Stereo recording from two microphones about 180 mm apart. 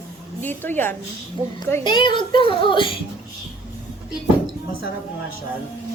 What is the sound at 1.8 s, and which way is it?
A child's voice, 30° left (ahead or behind).